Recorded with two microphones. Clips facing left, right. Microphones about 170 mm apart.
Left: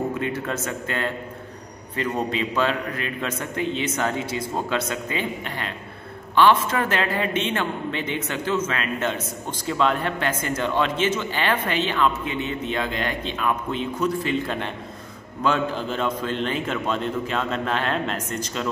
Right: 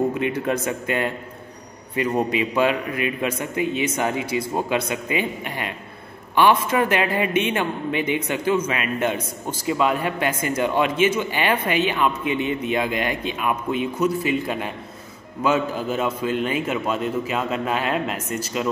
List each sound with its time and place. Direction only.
0.2 s a man's voice: 15° right (ahead or behind)